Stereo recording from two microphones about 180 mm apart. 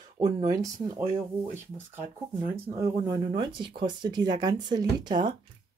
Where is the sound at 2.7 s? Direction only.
20° right (ahead or behind).